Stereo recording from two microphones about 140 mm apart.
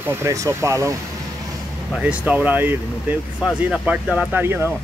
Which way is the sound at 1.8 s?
5° right (ahead or behind).